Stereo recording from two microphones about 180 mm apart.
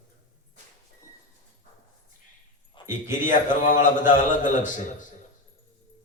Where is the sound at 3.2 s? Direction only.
45° left (ahead or behind).